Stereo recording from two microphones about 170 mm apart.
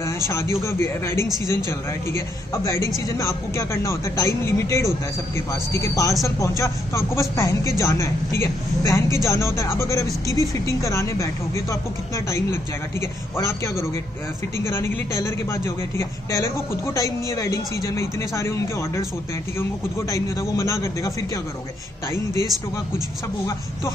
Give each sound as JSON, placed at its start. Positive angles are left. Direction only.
{"t": 0.3, "sound": "a man's voice", "side_deg": 15}
{"t": 1.2, "sound": "speech", "side_deg": -20}
{"t": 1.7, "sound": "a man's voice", "side_deg": 15}
{"t": 20.1, "sound": "a man's voice", "side_deg": 20}
{"t": 22.1, "sound": "a man's voice", "side_deg": 15}